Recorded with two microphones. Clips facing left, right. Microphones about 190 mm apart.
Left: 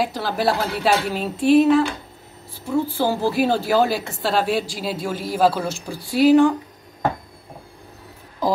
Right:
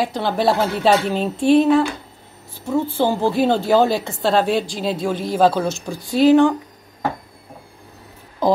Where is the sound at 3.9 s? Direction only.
5° left (ahead or behind).